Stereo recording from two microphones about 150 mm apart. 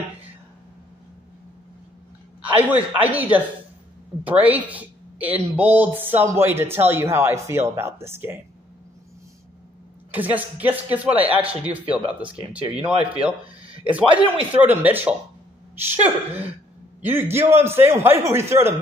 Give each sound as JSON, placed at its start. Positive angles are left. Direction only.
{"t": 2.4, "sound": "speech", "side_deg": -10}
{"t": 10.1, "sound": "speech", "side_deg": -10}
{"t": 13.8, "sound": "speech", "side_deg": -10}